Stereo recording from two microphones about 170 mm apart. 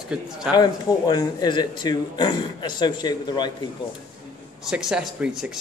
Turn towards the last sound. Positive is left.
turn(degrees=-5)  # may be behind; listen again after turning